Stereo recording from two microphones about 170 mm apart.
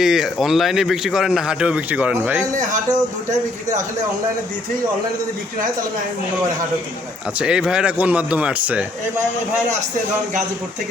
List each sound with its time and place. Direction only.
0.0 s a man's voice: 5° right (ahead or behind)
7.3 s speech: 5° right (ahead or behind)